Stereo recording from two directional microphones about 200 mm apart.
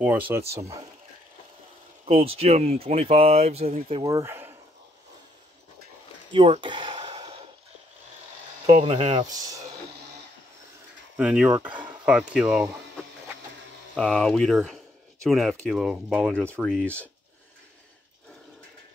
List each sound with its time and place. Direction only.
0.0 s speech: 10° right (ahead or behind)
2.0 s speech: 30° right (ahead or behind)
4.0 s speech: 15° right (ahead or behind)
6.3 s a sound: 25° right (ahead or behind)
8.8 s speech: 30° right (ahead or behind)
11.1 s speech: 5° right (ahead or behind)
13.9 s speech: 5° left (ahead or behind)